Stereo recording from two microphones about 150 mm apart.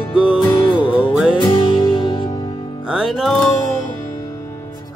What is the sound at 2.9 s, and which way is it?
Music, centre (ahead or behind).